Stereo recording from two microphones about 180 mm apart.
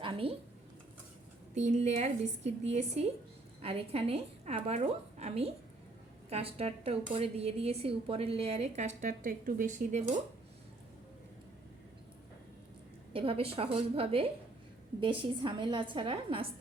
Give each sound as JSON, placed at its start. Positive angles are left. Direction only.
{"t": 0.0, "sound": "speech", "side_deg": -30}
{"t": 1.5, "sound": "a woman's voice", "side_deg": -40}
{"t": 9.0, "sound": "speech", "side_deg": -45}
{"t": 13.1, "sound": "a woman's voice", "side_deg": -30}